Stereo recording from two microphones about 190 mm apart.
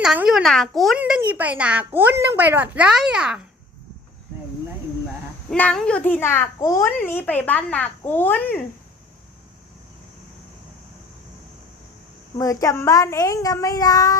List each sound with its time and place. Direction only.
0.0 s a child's voice: 5° right (ahead or behind)
5.5 s a child's voice: 5° left (ahead or behind)
12.4 s a child's voice: 15° left (ahead or behind)